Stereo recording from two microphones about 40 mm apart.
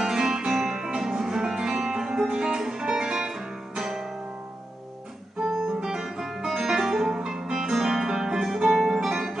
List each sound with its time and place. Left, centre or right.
0.0 s music: centre
5.5 s music: centre